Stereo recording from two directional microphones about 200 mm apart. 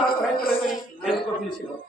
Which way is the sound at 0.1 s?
50° left (ahead or behind).